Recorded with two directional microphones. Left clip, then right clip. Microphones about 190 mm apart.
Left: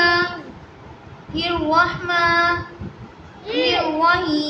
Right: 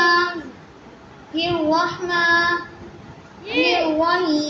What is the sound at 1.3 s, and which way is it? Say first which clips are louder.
Speech: left 1 dB; centre (ahead or behind).